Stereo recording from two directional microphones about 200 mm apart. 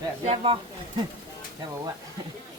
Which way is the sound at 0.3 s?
25° right (ahead or behind).